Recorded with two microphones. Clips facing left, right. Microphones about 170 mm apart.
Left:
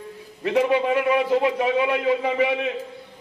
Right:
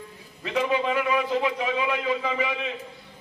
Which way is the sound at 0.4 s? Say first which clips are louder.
Left 5 dB; 55° left (ahead or behind).